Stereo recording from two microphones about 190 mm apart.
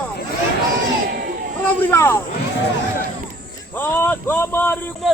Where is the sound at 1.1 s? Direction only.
50° right (ahead or behind).